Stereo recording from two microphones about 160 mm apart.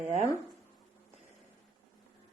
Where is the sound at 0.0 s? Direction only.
50° right (ahead or behind).